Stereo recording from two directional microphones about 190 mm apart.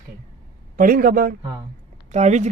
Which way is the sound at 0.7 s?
50° right (ahead or behind).